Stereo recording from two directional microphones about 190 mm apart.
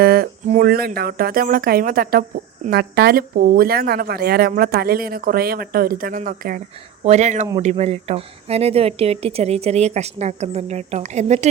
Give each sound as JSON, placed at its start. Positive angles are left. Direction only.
{"t": 0.0, "sound": "a woman's voice", "side_deg": -50}